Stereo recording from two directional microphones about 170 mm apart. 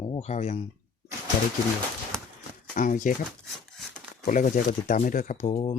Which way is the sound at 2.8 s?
50° left (ahead or behind).